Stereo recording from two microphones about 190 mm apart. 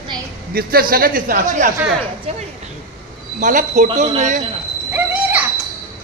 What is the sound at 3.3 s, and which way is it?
Speech, 45° right (ahead or behind).